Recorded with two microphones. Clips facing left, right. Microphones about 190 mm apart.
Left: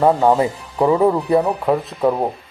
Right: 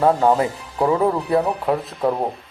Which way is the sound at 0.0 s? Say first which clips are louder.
Left 2 dB; 5° left (ahead or behind).